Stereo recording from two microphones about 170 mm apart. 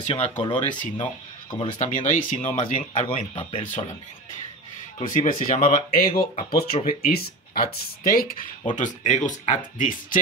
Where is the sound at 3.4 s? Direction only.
30° left (ahead or behind).